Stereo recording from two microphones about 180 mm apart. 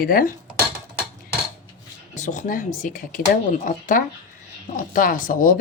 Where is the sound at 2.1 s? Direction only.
45° left (ahead or behind).